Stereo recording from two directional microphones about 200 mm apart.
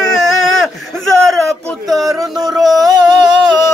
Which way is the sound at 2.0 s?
15° right (ahead or behind).